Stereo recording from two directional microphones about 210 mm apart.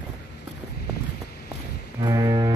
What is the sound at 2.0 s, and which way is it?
Music, 20° right (ahead or behind).